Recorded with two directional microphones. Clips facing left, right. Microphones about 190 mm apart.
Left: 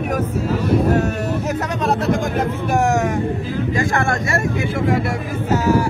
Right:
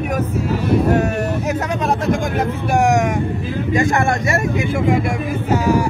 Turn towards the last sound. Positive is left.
turn(degrees=-10)  # may be behind; listen again after turning